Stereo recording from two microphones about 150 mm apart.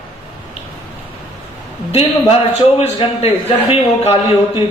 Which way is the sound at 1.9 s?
40° left (ahead or behind).